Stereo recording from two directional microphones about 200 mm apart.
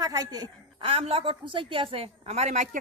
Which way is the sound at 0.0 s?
20° right (ahead or behind).